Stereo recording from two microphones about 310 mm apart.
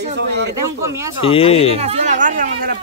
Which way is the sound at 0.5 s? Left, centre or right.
Right.